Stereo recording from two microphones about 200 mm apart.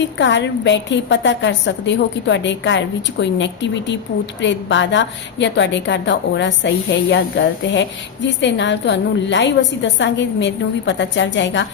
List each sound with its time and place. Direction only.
0.0 s a woman's voice: 60° left (ahead or behind)